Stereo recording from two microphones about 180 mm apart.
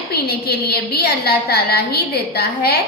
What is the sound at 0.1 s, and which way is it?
A woman's voice, 60° left (ahead or behind).